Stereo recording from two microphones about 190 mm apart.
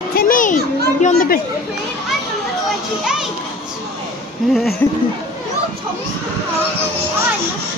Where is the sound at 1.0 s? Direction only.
45° left (ahead or behind).